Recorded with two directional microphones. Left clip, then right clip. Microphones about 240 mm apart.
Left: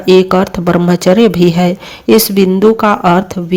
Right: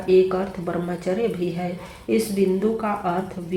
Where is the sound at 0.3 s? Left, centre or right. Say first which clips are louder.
Left 14 dB; left.